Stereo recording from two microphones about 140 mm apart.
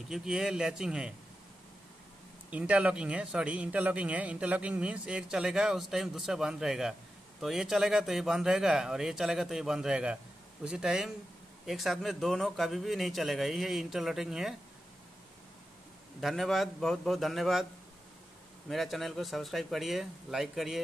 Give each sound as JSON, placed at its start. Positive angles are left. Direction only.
{"t": 0.1, "sound": "speech", "side_deg": -5}
{"t": 2.5, "sound": "speech", "side_deg": -10}
{"t": 16.2, "sound": "speech", "side_deg": 0}
{"t": 18.7, "sound": "speech", "side_deg": 0}